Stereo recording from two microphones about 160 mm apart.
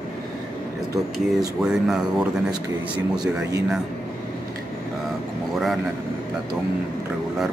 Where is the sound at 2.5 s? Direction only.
25° right (ahead or behind).